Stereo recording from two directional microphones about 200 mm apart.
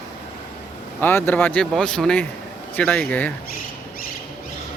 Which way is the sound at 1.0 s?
10° left (ahead or behind).